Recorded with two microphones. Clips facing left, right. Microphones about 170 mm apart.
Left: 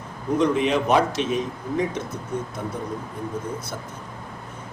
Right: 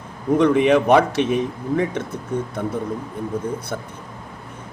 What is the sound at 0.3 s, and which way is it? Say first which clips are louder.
A man's voice: right 5 dB; 60° right (ahead or behind).